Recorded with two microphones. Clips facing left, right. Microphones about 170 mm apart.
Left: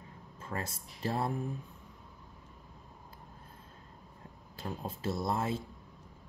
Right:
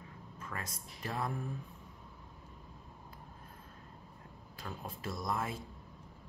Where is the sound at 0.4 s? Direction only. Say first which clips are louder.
Left 5 dB; 30° left (ahead or behind).